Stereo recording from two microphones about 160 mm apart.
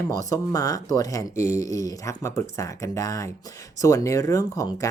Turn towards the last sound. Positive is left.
turn(degrees=20)  # may be behind; listen again after turning